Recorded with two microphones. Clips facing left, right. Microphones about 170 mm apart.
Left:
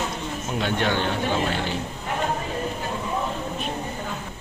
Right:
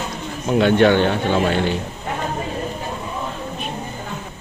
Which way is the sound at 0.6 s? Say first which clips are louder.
Right 11 dB; 70° right (ahead or behind).